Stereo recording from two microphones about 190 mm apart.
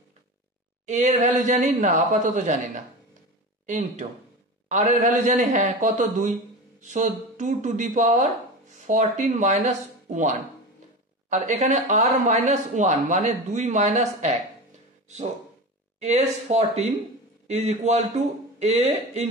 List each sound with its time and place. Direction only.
0.8 s speech: 40° right (ahead or behind)
16.0 s speech: 35° right (ahead or behind)